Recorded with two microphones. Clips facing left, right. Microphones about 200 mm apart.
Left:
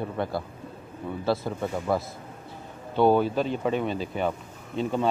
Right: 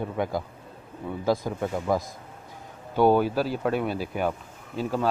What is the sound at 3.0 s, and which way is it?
Speech, 10° right (ahead or behind).